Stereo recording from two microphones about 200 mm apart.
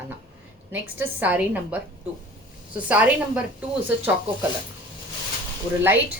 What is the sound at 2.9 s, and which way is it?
Speech, 10° right (ahead or behind).